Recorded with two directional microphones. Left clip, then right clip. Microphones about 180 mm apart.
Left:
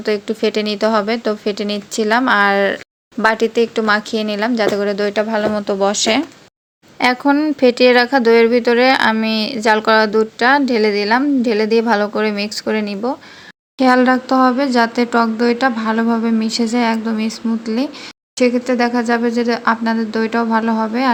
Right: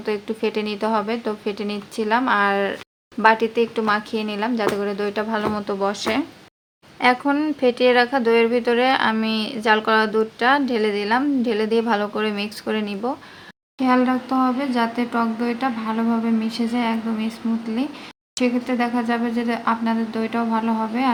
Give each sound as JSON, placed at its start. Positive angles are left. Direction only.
{"t": 0.0, "sound": "speech", "side_deg": 20}
{"t": 13.7, "sound": "speech", "side_deg": 40}